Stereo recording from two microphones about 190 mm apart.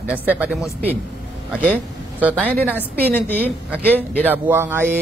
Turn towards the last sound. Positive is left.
turn(degrees=-10)  # may be behind; listen again after turning